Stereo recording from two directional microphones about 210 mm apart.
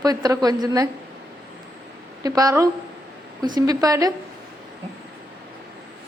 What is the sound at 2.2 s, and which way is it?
Speech, 15° right (ahead or behind).